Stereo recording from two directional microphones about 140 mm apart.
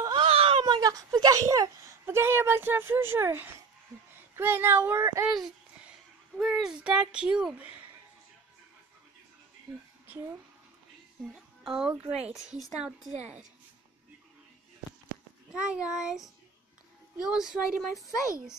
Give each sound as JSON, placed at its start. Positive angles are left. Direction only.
{"t": 0.1, "sound": "speech", "side_deg": -45}
{"t": 5.4, "sound": "speech", "side_deg": -5}
{"t": 11.6, "sound": "speech", "side_deg": -5}
{"t": 13.1, "sound": "a woman's voice", "side_deg": -55}
{"t": 15.5, "sound": "speech", "side_deg": -5}